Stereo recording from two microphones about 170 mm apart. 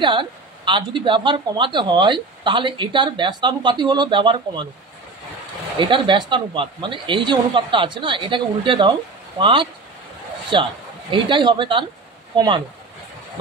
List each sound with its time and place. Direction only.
0.0 s speech: 30° right (ahead or behind)
5.8 s speech: 30° right (ahead or behind)